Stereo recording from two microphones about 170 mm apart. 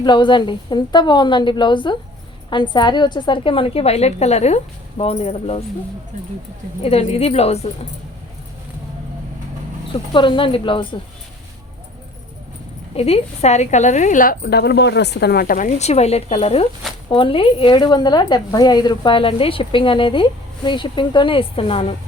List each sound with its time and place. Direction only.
0.0 s a woman's voice: 25° left (ahead or behind)
6.8 s a woman's voice: 35° left (ahead or behind)
10.1 s speech: 30° left (ahead or behind)
13.0 s a woman's voice: 35° left (ahead or behind)
14.4 s speech: 75° left (ahead or behind); by 21.9 s 35° left (ahead or behind)